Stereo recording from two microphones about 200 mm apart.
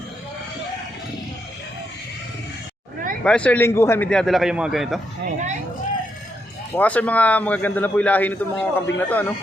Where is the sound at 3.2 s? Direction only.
5° left (ahead or behind).